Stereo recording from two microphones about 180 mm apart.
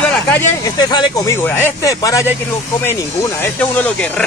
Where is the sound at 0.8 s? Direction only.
25° left (ahead or behind).